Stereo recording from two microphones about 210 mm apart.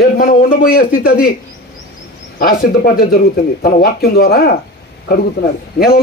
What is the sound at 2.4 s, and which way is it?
A man's voice, 45° left (ahead or behind).